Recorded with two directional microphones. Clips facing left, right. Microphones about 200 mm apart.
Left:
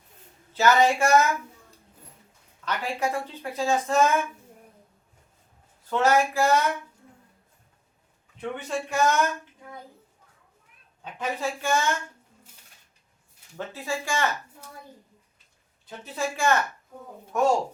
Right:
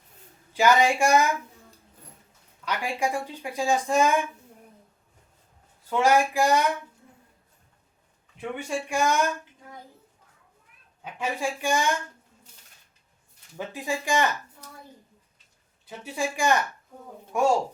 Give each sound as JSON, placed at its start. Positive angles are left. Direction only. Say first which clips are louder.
{"t": 0.5, "sound": "speech", "louder": "even", "side_deg": -15}
{"t": 2.6, "sound": "speech", "louder": "even", "side_deg": -15}
{"t": 5.9, "sound": "speech", "louder": "even", "side_deg": -10}
{"t": 8.4, "sound": "speech", "louder": "even", "side_deg": -10}
{"t": 11.0, "sound": "speech", "louder": "even", "side_deg": -10}
{"t": 13.6, "sound": "speech", "louder": "right 1 dB", "side_deg": -15}
{"t": 15.9, "sound": "speech", "louder": "right 1 dB", "side_deg": -15}